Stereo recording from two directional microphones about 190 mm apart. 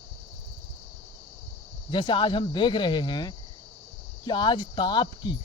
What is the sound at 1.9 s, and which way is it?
Speech, 25° left (ahead or behind).